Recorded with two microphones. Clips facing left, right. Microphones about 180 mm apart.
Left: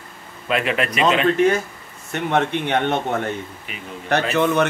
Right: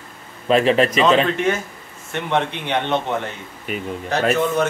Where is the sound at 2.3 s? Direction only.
50° left (ahead or behind).